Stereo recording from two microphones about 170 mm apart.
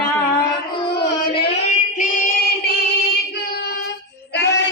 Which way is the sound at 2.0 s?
50° left (ahead or behind).